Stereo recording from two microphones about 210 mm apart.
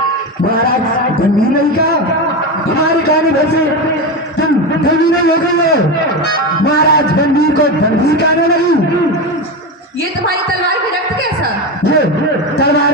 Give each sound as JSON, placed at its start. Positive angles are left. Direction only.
{"t": 6.7, "sound": "a man's voice", "side_deg": 50}